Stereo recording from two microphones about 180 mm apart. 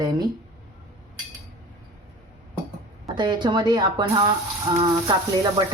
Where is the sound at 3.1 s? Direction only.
25° right (ahead or behind).